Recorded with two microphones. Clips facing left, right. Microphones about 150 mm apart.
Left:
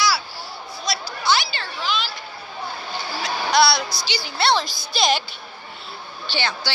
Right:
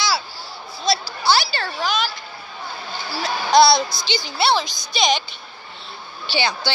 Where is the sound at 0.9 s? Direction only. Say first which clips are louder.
Right 3 dB; 30° right (ahead or behind); by 2.0 s 45° right (ahead or behind).